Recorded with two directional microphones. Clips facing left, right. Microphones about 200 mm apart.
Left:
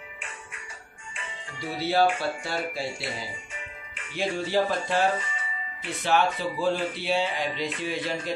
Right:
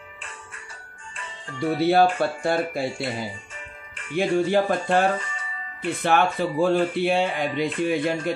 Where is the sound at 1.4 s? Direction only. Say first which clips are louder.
Right 10 dB; 55° right (ahead or behind).